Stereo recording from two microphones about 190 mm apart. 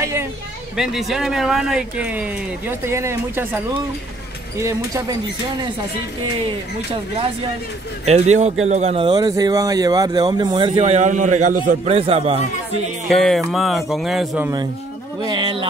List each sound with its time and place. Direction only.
0.0 s a sound: 15° right (ahead or behind)
0.7 s speech: centre (ahead or behind)
8.0 s a man's voice: 35° right (ahead or behind)
11.8 s a man's voice: 35° right (ahead or behind)
13.1 s speech: centre (ahead or behind)
15.2 s speech: 25° right (ahead or behind)